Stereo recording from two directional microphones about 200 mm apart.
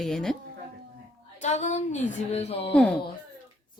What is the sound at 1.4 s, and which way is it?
A woman's voice, 35° left (ahead or behind).